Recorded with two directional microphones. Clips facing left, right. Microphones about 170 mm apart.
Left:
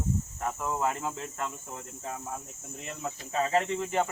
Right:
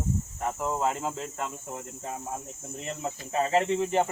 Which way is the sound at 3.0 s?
25° right (ahead or behind).